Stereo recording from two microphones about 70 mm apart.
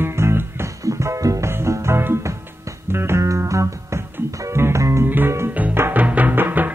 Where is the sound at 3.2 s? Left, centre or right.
Right.